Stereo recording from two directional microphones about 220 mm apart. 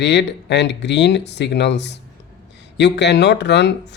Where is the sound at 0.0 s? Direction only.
50° left (ahead or behind).